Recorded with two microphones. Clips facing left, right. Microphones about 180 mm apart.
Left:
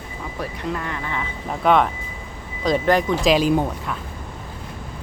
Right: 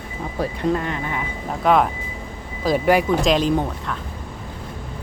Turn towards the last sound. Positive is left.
turn(degrees=10)  # may be behind; listen again after turning